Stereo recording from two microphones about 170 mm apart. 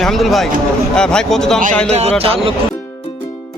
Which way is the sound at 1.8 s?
40° right (ahead or behind).